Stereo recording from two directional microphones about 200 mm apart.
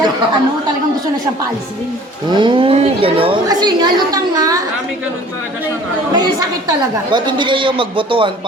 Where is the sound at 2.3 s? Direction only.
25° right (ahead or behind).